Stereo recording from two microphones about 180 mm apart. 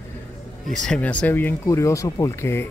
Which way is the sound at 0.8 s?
5° left (ahead or behind).